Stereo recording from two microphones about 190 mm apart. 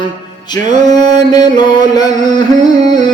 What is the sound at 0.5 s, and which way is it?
Carnatic music, 20° left (ahead or behind).